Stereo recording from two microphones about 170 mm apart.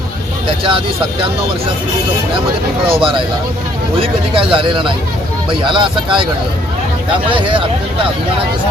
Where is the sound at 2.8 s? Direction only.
30° right (ahead or behind).